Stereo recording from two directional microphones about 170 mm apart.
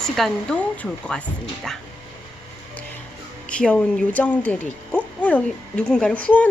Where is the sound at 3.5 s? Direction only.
5° left (ahead or behind).